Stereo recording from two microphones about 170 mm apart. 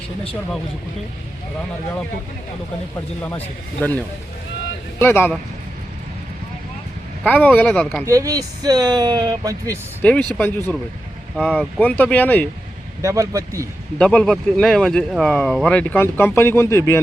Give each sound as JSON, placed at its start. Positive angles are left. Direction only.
{"t": 3.2, "sound": "speech", "side_deg": 10}
{"t": 7.3, "sound": "speech", "side_deg": 10}
{"t": 8.0, "sound": "speech", "side_deg": -20}
{"t": 10.0, "sound": "speech", "side_deg": 10}
{"t": 13.0, "sound": "speech", "side_deg": -20}
{"t": 14.0, "sound": "speech", "side_deg": 5}